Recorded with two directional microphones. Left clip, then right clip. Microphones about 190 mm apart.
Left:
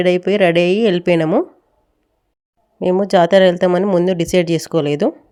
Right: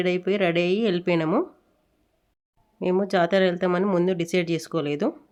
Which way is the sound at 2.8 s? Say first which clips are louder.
Left 9 dB; 30° left (ahead or behind).